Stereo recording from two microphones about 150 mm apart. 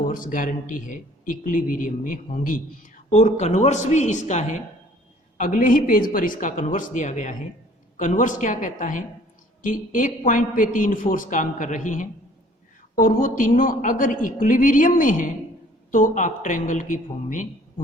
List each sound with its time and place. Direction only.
0.1 s a man's voice: 65° left (ahead or behind)
3.1 s a man's voice: 50° left (ahead or behind)
5.4 s a man's voice: 60° left (ahead or behind)